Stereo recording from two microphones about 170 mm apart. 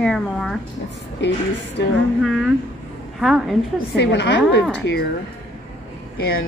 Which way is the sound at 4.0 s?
80° left.